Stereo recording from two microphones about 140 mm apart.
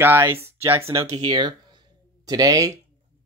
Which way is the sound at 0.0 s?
15° right (ahead or behind).